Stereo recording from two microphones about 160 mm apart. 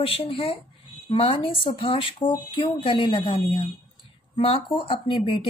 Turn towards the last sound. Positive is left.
turn(degrees=35)  # may be behind; listen again after turning